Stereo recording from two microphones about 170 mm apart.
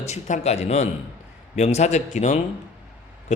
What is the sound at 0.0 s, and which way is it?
Speech, 40° left (ahead or behind).